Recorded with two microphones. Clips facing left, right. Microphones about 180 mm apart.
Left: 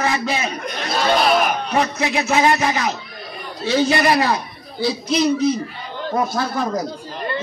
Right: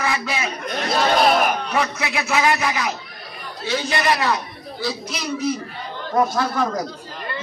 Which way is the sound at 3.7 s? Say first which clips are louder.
Left 5 dB; 30° left (ahead or behind).